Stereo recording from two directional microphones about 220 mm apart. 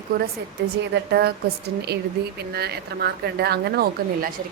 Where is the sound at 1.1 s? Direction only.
45° right (ahead or behind).